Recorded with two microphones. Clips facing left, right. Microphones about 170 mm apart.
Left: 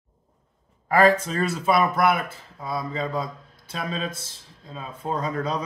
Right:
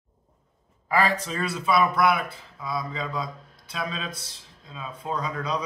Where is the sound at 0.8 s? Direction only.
50° left (ahead or behind).